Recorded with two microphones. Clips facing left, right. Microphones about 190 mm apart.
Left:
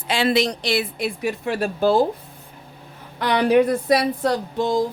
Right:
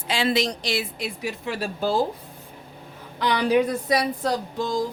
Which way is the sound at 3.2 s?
60° left (ahead or behind).